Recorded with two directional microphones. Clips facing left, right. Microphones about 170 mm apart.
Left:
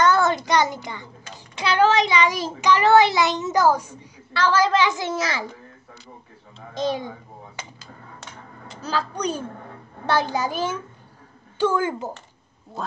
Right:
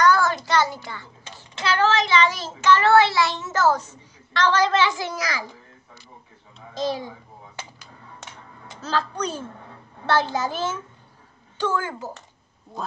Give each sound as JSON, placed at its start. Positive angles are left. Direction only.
{"t": 0.0, "sound": "child singing", "side_deg": 20}
{"t": 6.7, "sound": "a child's voice", "side_deg": 20}
{"t": 8.8, "sound": "a child's voice", "side_deg": 10}